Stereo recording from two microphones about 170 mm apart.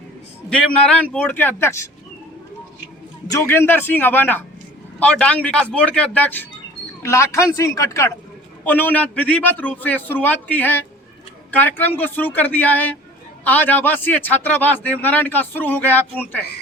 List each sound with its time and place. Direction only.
0.5 s a man's voice: 5° left (ahead or behind)
3.3 s a man's voice: 15° left (ahead or behind)